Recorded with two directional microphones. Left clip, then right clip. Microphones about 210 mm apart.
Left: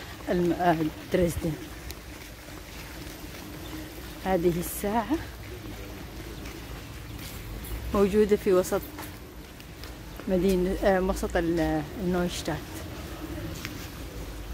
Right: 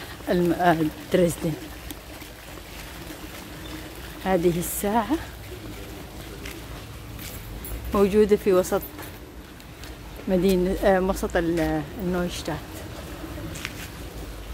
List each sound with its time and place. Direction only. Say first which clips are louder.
0.3 s speech: right 4 dB; 20° right (ahead or behind)
4.2 s speech: right 3 dB; 15° right (ahead or behind)
7.9 s speech: right 4 dB; 10° right (ahead or behind)
10.3 s speech: right 3 dB; 15° right (ahead or behind)
12.1 s a woman's voice: right 1 dB; 5° left (ahead or behind)